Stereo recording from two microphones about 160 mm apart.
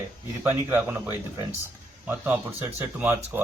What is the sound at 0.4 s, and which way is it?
A man's voice, 10° right (ahead or behind).